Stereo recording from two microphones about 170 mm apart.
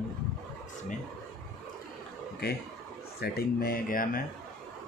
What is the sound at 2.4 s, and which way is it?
Speech, 70° left (ahead or behind).